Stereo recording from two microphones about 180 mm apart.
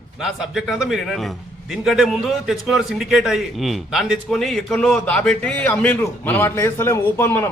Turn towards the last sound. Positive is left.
turn(degrees=15)  # may be behind; listen again after turning